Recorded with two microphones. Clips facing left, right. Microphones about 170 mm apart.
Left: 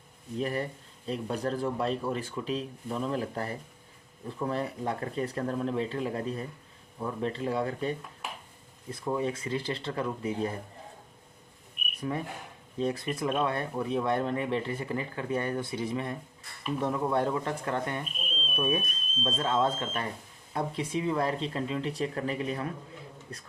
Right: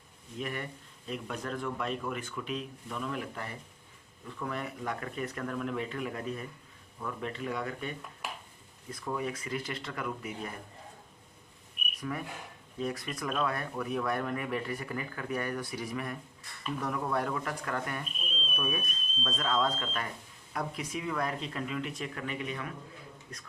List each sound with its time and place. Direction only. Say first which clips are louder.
0.3 s speech: left 6 dB; 35° left (ahead or behind)
11.9 s speech: left 4 dB; 30° left (ahead or behind)